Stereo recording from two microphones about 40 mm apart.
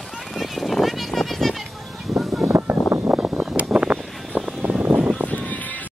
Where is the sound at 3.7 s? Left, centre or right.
Right.